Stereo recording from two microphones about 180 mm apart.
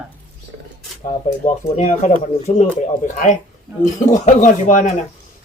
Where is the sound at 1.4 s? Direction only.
40° left (ahead or behind).